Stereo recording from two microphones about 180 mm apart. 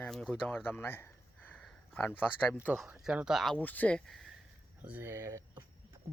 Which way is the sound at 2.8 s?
5° right (ahead or behind).